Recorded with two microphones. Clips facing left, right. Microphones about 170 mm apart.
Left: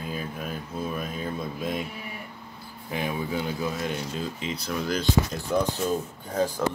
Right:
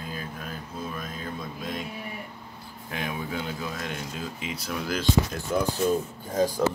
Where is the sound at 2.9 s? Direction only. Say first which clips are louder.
Left 3 dB; centre (ahead or behind).